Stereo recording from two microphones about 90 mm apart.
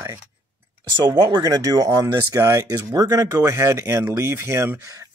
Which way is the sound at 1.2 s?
45° right (ahead or behind).